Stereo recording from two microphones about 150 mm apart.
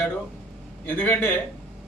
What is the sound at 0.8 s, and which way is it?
Speech, 10° left (ahead or behind).